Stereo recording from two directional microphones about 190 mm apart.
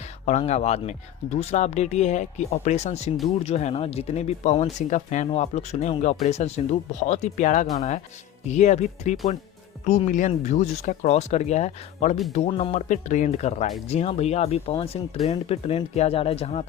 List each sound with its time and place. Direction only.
0.3 s speech: 35° left (ahead or behind)